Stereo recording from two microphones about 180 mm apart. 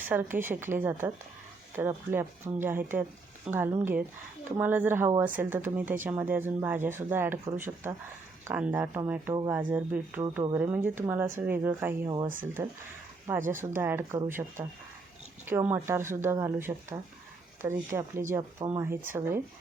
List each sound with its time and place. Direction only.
0.0 s speech: 10° right (ahead or behind)
13.4 s speech: 45° right (ahead or behind)
13.7 s speech: 15° right (ahead or behind)